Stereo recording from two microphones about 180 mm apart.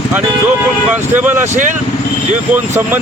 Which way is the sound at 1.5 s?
45° right (ahead or behind).